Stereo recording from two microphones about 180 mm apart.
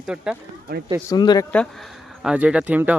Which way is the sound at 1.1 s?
25° left (ahead or behind).